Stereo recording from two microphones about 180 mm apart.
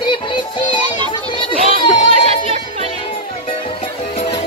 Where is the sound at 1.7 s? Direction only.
30° left (ahead or behind).